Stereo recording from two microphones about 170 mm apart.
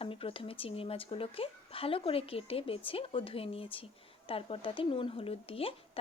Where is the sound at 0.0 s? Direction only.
35° left (ahead or behind).